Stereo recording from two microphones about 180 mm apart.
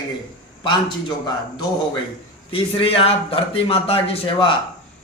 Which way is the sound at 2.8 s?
30° left (ahead or behind).